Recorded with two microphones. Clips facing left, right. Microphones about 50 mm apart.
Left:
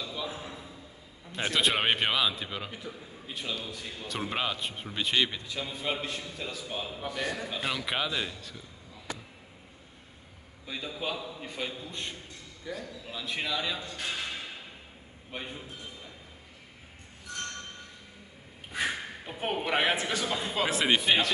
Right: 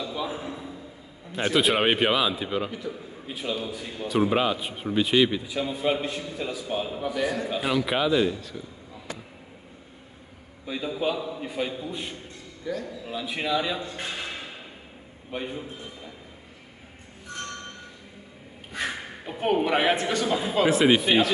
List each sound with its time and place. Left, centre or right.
0.0 s a sound: centre
1.3 s a man's voice: centre
10.7 s a man's voice: centre
13.7 s a man's voice: right
14.1 s a sound: centre
15.3 s a man's voice: centre
18.7 s a man's voice: centre